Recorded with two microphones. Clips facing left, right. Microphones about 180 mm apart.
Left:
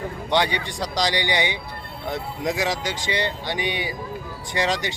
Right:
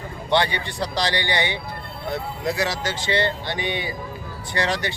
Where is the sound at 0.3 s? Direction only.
15° left (ahead or behind).